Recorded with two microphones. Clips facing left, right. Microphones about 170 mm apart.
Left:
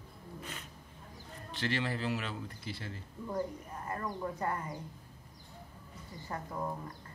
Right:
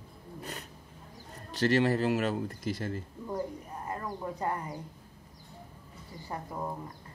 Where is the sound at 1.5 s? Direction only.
45° right (ahead or behind).